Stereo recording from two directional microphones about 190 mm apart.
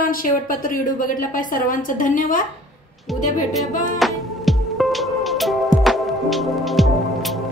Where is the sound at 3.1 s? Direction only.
Centre (ahead or behind).